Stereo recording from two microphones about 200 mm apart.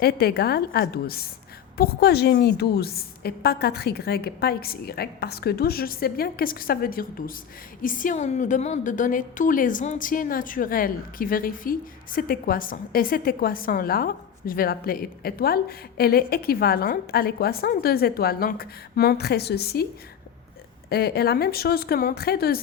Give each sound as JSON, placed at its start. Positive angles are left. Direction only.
{"t": 0.0, "sound": "a woman's voice", "side_deg": 50}
{"t": 20.9, "sound": "a woman's voice", "side_deg": 50}